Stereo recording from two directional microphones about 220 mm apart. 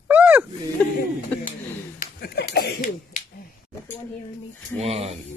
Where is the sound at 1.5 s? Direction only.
35° left (ahead or behind).